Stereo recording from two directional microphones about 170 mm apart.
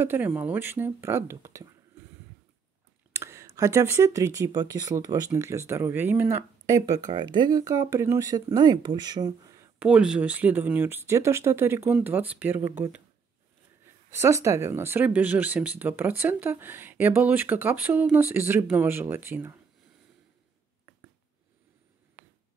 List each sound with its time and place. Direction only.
0.0 s speech: 10° right (ahead or behind)
3.1 s speech: 15° right (ahead or behind)
7.2 s speech: 25° right (ahead or behind)
9.8 s speech: 5° right (ahead or behind)